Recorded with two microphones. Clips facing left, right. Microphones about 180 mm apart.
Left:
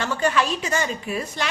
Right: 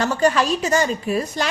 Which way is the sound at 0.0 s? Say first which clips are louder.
Right 4 dB; 40° right (ahead or behind).